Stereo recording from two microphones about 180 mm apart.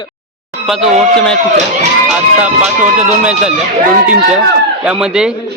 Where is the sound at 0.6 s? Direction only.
Centre (ahead or behind).